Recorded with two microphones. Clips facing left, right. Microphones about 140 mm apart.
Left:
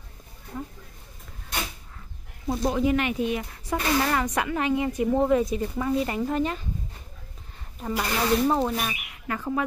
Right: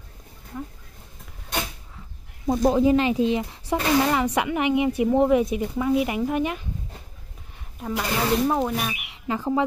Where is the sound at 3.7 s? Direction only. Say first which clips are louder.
Right 3 dB; 15° right (ahead or behind).